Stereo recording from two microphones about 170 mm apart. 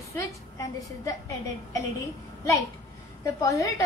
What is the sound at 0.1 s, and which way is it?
A woman's voice, 20° left (ahead or behind).